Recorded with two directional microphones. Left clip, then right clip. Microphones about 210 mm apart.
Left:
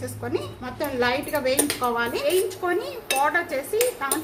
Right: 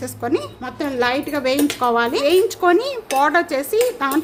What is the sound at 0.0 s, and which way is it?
Speech, 50° right (ahead or behind).